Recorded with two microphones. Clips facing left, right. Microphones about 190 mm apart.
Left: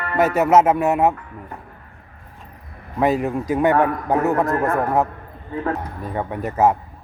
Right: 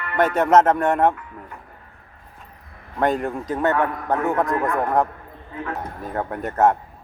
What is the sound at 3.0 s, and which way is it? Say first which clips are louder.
Speech: left 3 dB; 5° left (ahead or behind).